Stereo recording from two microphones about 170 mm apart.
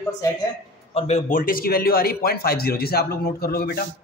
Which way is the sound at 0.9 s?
45° left (ahead or behind).